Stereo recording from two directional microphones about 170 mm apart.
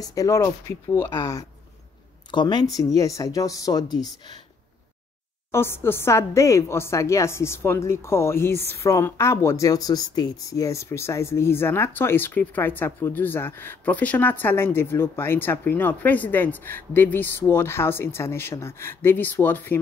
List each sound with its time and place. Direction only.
0.0 s speech: 20° left (ahead or behind)
5.5 s speech: 15° left (ahead or behind)